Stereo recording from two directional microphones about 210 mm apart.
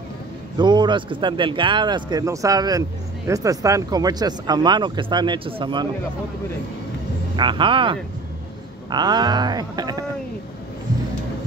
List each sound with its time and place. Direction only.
0.6 s speech: 20° right (ahead or behind)
7.3 s speech: 25° right (ahead or behind)